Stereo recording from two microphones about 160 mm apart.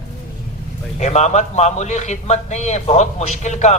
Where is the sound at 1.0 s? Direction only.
45° left (ahead or behind).